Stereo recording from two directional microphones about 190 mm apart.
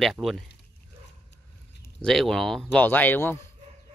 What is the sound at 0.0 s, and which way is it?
Speech, centre (ahead or behind).